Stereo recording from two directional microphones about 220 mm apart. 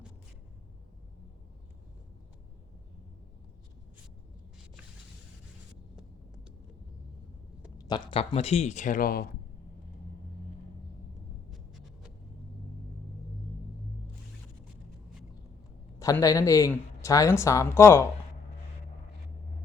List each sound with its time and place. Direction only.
7.8 s speech: 20° left (ahead or behind); by 9.3 s 40° left (ahead or behind)
11.5 s a sound: centre (ahead or behind)
16.0 s speech: 15° left (ahead or behind)